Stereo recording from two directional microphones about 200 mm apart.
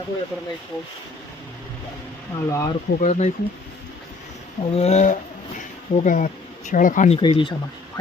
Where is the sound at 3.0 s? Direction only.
35° left (ahead or behind).